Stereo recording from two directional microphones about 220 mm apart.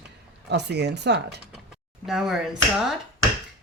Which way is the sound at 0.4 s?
50° right (ahead or behind).